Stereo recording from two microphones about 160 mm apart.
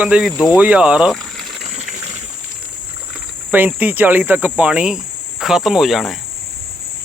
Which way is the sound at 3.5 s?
10° right (ahead or behind).